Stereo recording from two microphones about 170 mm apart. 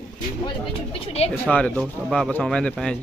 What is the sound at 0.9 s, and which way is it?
Speech, 35° left (ahead or behind).